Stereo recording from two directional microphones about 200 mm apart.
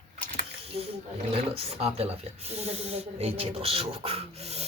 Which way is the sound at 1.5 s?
30° right (ahead or behind).